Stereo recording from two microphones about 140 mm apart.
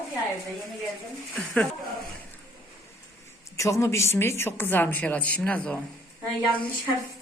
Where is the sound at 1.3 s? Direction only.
10° left (ahead or behind).